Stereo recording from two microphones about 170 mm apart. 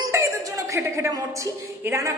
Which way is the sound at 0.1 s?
20° right (ahead or behind).